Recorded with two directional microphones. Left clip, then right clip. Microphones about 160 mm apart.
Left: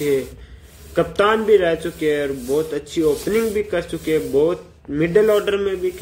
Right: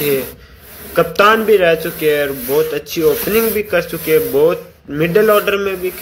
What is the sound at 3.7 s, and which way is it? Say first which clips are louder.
Speech: right 7 dB; 20° left (ahead or behind).